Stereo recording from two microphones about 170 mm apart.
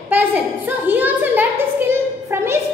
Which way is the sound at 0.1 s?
10° right (ahead or behind).